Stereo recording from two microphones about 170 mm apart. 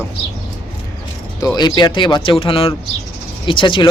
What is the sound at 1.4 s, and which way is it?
Speech, 25° left (ahead or behind).